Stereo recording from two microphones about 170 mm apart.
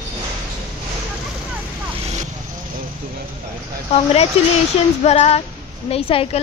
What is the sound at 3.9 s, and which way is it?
Speech, 35° left (ahead or behind).